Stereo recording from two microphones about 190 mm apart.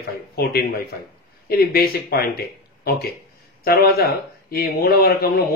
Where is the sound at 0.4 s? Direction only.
55° left (ahead or behind).